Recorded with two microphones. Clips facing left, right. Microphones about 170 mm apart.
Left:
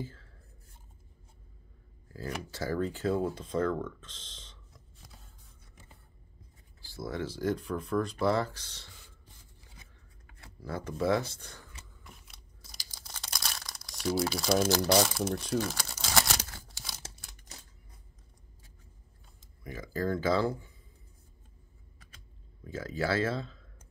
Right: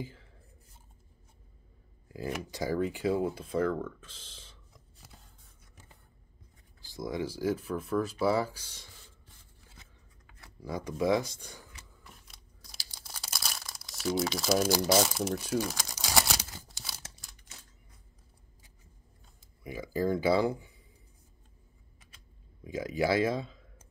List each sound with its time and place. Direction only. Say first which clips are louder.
0.0 s speech: even; 15° right (ahead or behind)
2.0 s a sound: right 3 dB; 15° right (ahead or behind)
2.5 s speech: right 1 dB; 15° right (ahead or behind)
6.8 s speech: right 2 dB; 15° right (ahead or behind)
10.6 s camera: right 1 dB; 15° right (ahead or behind)
13.0 s speech: even; 5° right (ahead or behind)
16.0 s a sound: even; centre (ahead or behind)
16.6 s crumpling: even; 5° right (ahead or behind)
19.6 s speech: right 3 dB; 10° right (ahead or behind)
22.6 s speech: right 3 dB; 15° right (ahead or behind)